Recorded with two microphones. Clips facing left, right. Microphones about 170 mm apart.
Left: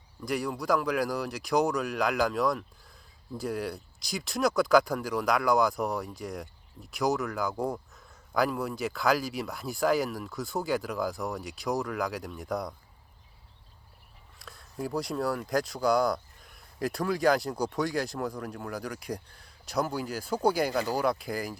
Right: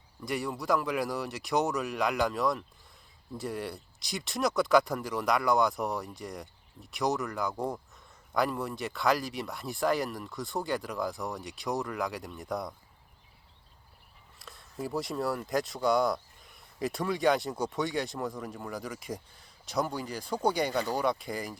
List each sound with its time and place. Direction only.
0.3 s speech: centre (ahead or behind)
14.3 s speech: centre (ahead or behind)